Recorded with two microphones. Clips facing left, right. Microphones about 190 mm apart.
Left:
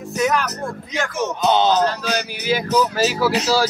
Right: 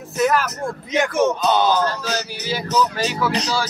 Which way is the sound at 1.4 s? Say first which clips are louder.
Left 1 dB; 25° left (ahead or behind).